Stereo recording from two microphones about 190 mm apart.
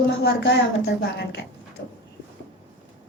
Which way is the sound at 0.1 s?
65° left (ahead or behind).